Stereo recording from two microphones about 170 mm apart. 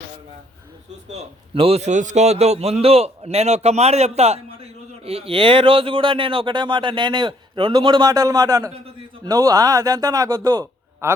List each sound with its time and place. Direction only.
1.1 s a man's voice: 35° right (ahead or behind); by 11.1 s 20° right (ahead or behind)